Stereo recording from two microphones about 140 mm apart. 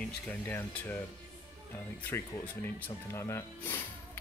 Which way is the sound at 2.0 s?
10° left (ahead or behind).